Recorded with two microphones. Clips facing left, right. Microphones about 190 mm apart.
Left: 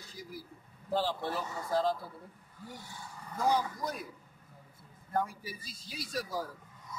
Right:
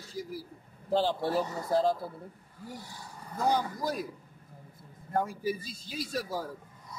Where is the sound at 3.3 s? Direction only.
35° right (ahead or behind).